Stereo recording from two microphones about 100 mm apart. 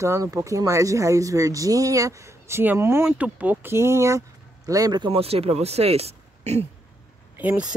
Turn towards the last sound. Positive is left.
turn(degrees=-15)  # may be behind; listen again after turning